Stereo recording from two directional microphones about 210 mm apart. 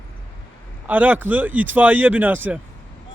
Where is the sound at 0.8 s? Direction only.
10° right (ahead or behind).